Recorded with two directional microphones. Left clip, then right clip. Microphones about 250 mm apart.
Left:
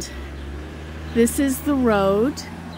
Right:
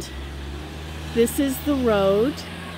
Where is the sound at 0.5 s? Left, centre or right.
Right.